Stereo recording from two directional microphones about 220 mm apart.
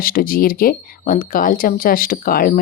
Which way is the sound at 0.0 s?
40° left (ahead or behind).